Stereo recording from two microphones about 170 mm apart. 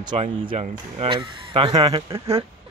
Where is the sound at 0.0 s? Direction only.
30° right (ahead or behind).